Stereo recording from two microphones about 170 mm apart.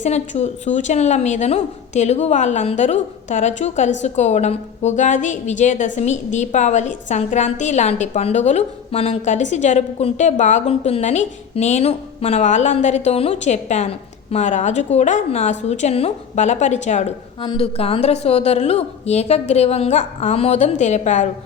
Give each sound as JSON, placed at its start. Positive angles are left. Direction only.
{"t": 0.0, "sound": "a woman's voice", "side_deg": 40}